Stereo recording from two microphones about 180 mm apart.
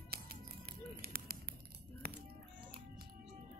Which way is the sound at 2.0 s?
60° right (ahead or behind).